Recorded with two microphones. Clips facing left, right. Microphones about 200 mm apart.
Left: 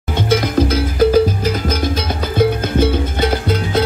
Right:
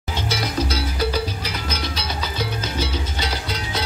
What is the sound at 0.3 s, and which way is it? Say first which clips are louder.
Music: left 10 dB; 50° left (ahead or behind).